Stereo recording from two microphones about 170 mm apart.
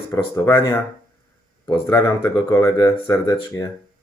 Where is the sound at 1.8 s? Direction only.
15° left (ahead or behind).